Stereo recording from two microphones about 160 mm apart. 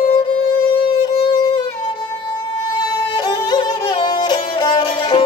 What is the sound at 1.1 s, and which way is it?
Music, 25° left (ahead or behind).